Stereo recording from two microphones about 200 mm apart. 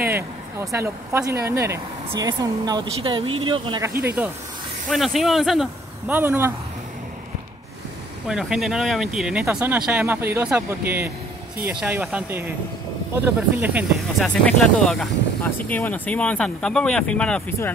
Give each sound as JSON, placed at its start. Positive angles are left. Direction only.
{"t": 0.1, "sound": "speech", "side_deg": -15}
{"t": 4.8, "sound": "speech", "side_deg": 0}
{"t": 8.3, "sound": "speech", "side_deg": 0}
{"t": 14.2, "sound": "speech", "side_deg": 0}